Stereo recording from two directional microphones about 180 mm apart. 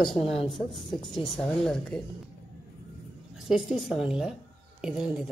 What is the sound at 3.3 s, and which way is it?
Speech, centre (ahead or behind).